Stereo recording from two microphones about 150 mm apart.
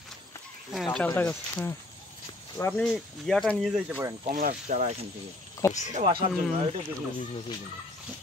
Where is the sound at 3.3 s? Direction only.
5° left (ahead or behind).